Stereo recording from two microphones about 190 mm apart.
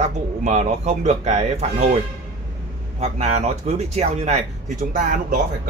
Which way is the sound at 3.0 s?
35° right (ahead or behind).